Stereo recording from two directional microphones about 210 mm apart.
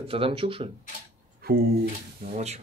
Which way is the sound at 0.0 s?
25° right (ahead or behind).